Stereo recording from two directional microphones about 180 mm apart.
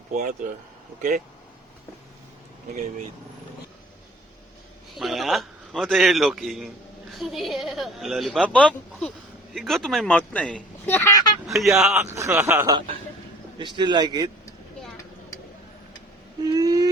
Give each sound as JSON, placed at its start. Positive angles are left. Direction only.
{"t": 2.7, "sound": "speech", "side_deg": -40}
{"t": 4.9, "sound": "a man's voice", "side_deg": 0}
{"t": 11.4, "sound": "a man's voice", "side_deg": 0}
{"t": 12.1, "sound": "speech", "side_deg": -15}
{"t": 13.6, "sound": "a man's voice", "side_deg": -25}
{"t": 16.4, "sound": "a sound", "side_deg": -20}